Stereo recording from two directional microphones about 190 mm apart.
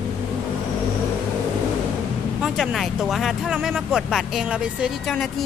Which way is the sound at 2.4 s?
Centre (ahead or behind).